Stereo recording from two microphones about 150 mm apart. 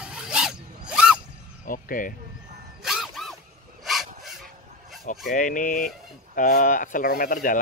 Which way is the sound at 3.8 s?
Centre (ahead or behind).